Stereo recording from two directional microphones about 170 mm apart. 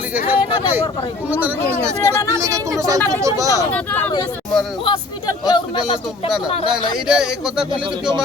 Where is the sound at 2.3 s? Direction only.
20° right (ahead or behind).